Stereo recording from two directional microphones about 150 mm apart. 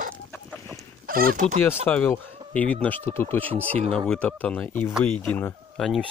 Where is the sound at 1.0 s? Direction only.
75° right (ahead or behind).